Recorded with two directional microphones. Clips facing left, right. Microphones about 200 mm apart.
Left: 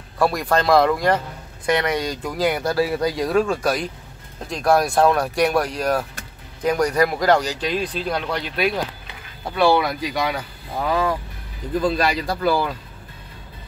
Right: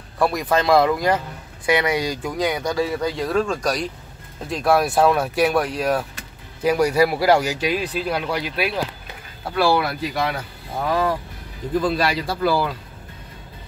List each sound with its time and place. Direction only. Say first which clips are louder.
0.2 s speech: even; centre (ahead or behind)